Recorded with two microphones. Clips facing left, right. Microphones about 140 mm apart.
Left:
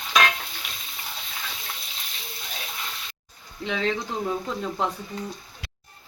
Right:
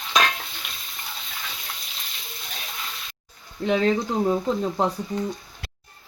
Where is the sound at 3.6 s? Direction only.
40° right (ahead or behind).